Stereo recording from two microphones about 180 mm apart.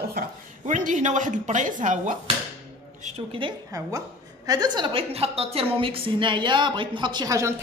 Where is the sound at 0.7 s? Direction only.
45° right (ahead or behind).